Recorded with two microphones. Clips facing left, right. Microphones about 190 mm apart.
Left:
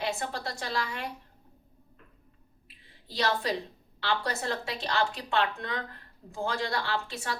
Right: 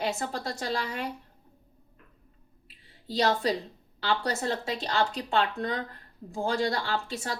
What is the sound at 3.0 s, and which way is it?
A woman's voice, 40° right (ahead or behind).